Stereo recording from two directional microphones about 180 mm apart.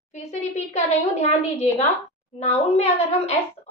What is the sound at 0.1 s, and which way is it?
A woman's voice, 40° left (ahead or behind).